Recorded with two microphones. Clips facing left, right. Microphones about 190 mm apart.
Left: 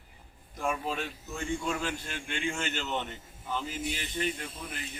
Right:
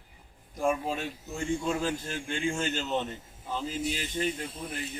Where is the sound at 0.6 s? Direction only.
30° right (ahead or behind).